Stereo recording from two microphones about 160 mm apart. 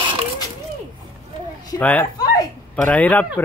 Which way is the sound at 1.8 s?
10° left (ahead or behind).